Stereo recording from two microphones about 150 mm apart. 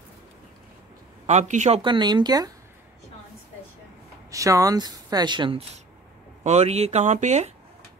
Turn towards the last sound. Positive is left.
turn(degrees=-50)  # may be behind; listen again after turning